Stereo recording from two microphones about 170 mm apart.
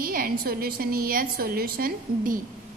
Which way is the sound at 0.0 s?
60° right (ahead or behind).